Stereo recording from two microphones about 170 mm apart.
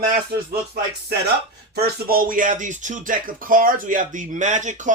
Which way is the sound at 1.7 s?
65° right (ahead or behind).